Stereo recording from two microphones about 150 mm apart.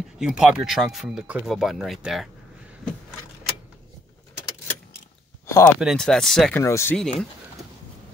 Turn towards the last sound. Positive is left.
turn(degrees=20)  # may be behind; listen again after turning